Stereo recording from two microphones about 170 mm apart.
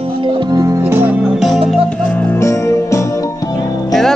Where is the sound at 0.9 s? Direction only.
10° right (ahead or behind).